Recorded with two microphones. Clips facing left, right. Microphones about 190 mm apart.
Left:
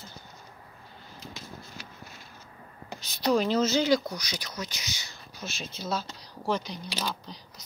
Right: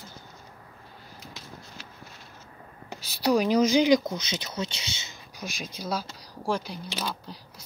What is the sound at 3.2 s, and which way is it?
Speech, 10° right (ahead or behind).